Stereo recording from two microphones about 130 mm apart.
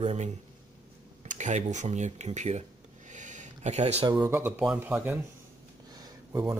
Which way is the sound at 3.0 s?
70° right (ahead or behind).